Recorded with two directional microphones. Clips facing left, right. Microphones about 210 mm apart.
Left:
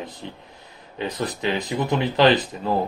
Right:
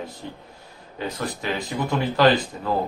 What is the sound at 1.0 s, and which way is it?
Speech, 20° left (ahead or behind).